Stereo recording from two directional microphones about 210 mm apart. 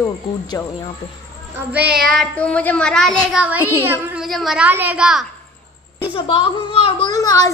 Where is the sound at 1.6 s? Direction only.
5° right (ahead or behind).